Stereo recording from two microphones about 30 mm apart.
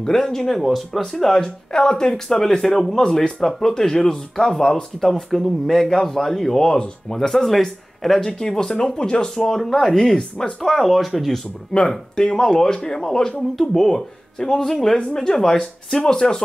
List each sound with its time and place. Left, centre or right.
0.0 s speech: centre
0.6 s speech: centre
1.4 s speech: left
5.3 s speech: centre
8.4 s speech: centre
9.3 s speech: centre
10.4 s speech: left
10.7 s speech: centre
11.9 s speech: centre
13.4 s speech: centre; by 16.4 s left